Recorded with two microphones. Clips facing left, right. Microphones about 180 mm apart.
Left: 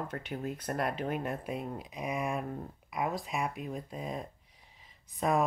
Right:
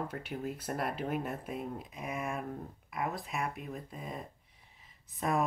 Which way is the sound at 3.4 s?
15° left (ahead or behind).